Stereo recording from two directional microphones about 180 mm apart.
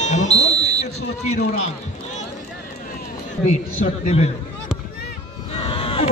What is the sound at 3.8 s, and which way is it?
Speech, 35° left (ahead or behind).